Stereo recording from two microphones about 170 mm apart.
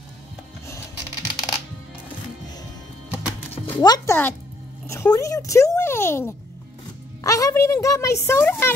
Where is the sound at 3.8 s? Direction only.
25° left (ahead or behind).